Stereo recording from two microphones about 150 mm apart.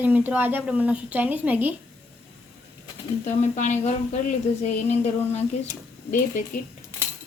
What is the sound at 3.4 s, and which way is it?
Speech, 55° left (ahead or behind).